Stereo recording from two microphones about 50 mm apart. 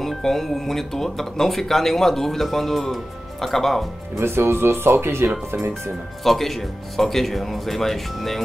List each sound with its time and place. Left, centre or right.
0.0 s speech: centre
4.2 s speech: right
6.2 s speech: centre